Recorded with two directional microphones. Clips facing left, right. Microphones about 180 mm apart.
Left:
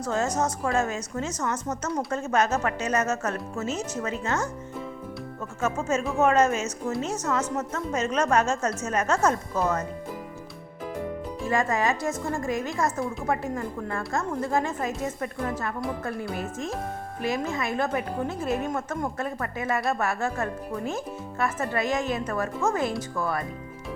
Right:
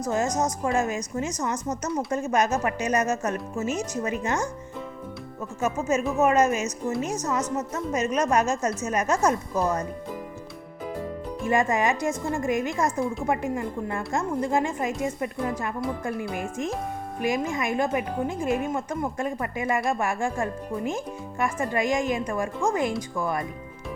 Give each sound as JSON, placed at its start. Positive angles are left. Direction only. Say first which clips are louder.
{"t": 0.3, "sound": "speech", "louder": "right 1 dB", "side_deg": -10}
{"t": 5.5, "sound": "speech", "louder": "right 1 dB", "side_deg": -10}
{"t": 11.4, "sound": "speech", "louder": "right 2 dB", "side_deg": -20}